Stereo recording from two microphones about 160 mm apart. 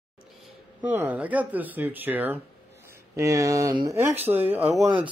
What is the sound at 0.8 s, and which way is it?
Speech, 10° right (ahead or behind).